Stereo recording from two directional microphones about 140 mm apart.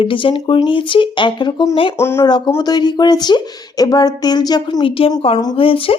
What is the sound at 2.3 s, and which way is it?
A woman's voice, 30° left (ahead or behind).